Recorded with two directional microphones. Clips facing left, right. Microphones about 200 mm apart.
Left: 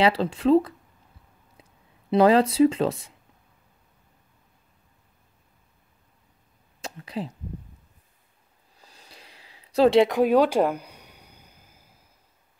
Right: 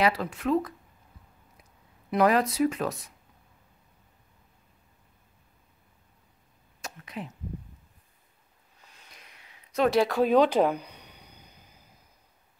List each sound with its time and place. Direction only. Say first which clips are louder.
0.0 s speech: left 5 dB; 30° left (ahead or behind)
6.8 s speech: left 6 dB; 30° left (ahead or behind)
8.7 s a sound: left 4 dB; 35° left (ahead or behind); by 11.9 s 5° left (ahead or behind)